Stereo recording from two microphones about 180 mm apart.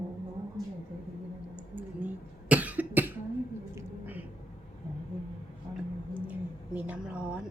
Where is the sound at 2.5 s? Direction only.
10° right (ahead or behind).